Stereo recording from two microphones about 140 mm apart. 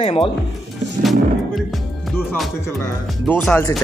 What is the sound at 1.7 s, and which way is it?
Music, centre (ahead or behind).